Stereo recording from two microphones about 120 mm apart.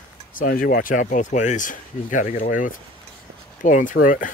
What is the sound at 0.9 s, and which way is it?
Speech, 90° left.